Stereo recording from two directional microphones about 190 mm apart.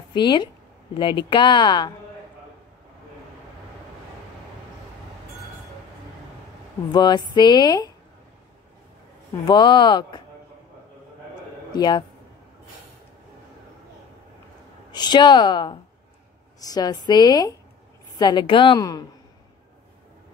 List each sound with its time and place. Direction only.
0.1 s a woman's voice: 25° left (ahead or behind)
6.9 s speech: 20° left (ahead or behind)
9.5 s speech: 25° left (ahead or behind)
11.7 s speech: 20° left (ahead or behind)
14.9 s speech: 20° left (ahead or behind)